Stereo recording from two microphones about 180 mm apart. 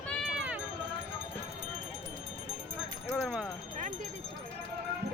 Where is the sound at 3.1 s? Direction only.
Centre (ahead or behind).